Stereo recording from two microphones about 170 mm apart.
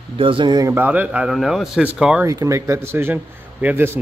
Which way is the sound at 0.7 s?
10° right (ahead or behind).